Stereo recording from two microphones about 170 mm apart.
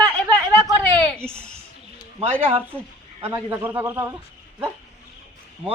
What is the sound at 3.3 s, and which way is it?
Speech, 10° right (ahead or behind).